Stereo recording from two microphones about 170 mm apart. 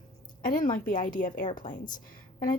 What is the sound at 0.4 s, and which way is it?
A woman's voice, 55° left (ahead or behind).